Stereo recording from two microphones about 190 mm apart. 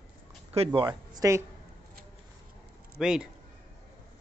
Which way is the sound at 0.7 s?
20° right (ahead or behind).